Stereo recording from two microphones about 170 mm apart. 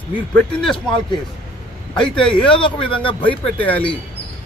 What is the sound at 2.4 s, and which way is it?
Speech, 30° left (ahead or behind).